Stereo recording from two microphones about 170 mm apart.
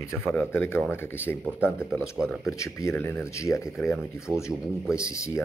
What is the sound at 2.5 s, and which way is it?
Speech, 20° left (ahead or behind).